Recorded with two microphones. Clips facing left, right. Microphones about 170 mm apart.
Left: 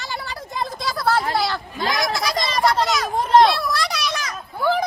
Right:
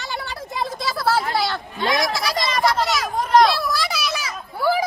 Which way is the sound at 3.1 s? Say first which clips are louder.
Left 1 dB; 25° left (ahead or behind).